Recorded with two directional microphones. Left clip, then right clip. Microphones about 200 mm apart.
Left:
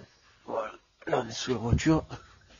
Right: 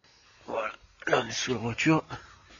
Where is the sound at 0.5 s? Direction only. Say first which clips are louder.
Right 1 dB; centre (ahead or behind).